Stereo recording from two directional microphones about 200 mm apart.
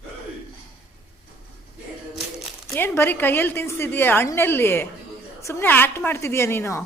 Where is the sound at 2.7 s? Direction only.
10° left (ahead or behind).